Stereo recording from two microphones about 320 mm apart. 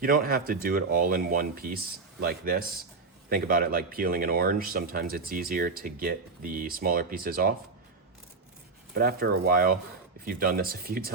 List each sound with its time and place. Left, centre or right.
0.0 s speech: right
9.0 s speech: right